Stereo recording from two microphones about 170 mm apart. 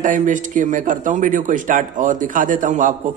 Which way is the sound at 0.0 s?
50° right (ahead or behind).